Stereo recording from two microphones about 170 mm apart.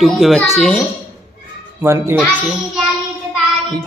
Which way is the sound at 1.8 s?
15° right (ahead or behind).